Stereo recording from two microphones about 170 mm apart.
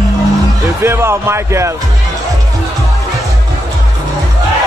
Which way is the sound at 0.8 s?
15° right (ahead or behind).